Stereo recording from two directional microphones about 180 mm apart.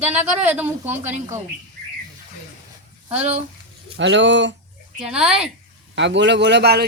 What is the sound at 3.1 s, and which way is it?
Speech, 35° right (ahead or behind).